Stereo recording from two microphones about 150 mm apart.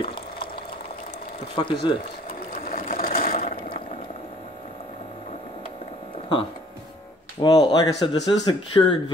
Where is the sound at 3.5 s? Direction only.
80° left.